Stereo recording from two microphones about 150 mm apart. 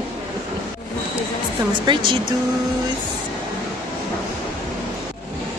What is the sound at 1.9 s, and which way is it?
Speech, 30° right (ahead or behind).